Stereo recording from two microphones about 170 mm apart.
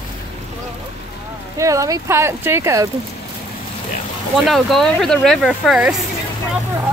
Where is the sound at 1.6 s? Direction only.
20° right (ahead or behind).